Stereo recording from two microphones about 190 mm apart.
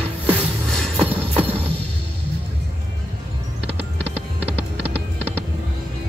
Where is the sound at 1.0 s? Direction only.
30° right (ahead or behind).